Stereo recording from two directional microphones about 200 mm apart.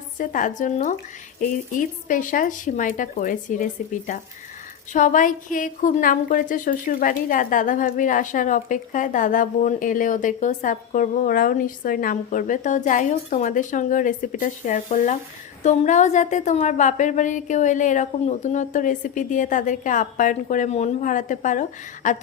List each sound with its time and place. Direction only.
0.2 s a woman's voice: 40° left (ahead or behind)